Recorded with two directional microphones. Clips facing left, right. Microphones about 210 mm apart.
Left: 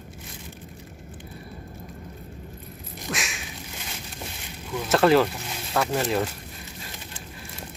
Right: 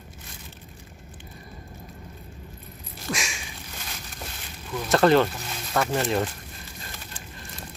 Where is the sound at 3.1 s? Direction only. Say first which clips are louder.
Right 1 dB; centre (ahead or behind).